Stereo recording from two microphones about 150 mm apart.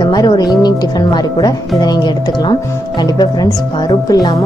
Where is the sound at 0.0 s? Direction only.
25° left (ahead or behind).